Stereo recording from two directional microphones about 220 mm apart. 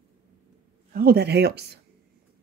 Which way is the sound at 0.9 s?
45° right (ahead or behind).